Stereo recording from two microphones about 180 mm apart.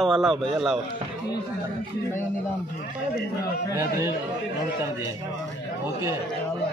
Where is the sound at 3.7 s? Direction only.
15° right (ahead or behind).